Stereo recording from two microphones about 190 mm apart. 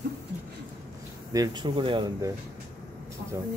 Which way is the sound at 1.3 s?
20° right (ahead or behind).